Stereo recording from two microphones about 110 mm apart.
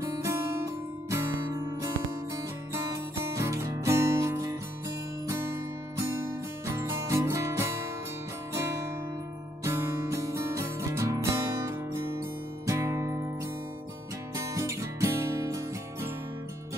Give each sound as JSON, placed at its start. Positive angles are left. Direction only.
{"t": 0.0, "sound": "music", "side_deg": -30}
{"t": 9.7, "sound": "music", "side_deg": -25}
{"t": 14.3, "sound": "music", "side_deg": -25}